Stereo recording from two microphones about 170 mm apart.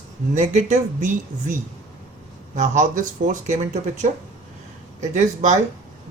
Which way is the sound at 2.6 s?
50° right (ahead or behind).